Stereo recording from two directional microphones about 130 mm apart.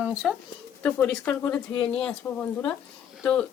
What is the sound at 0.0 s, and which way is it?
Speech, 5° right (ahead or behind).